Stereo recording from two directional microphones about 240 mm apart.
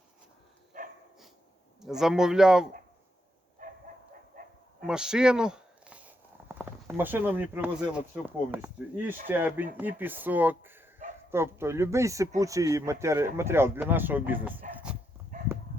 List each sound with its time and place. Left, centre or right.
1.8 s speech: centre
3.6 s dog: right
4.4 s bow-wow: right
4.9 s speech: centre
15.3 s dog: right